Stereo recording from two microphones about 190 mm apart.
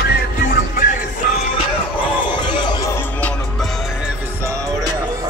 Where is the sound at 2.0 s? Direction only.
25° left (ahead or behind).